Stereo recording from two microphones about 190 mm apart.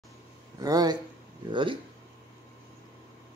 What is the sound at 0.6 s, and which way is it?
Speech, 20° right (ahead or behind).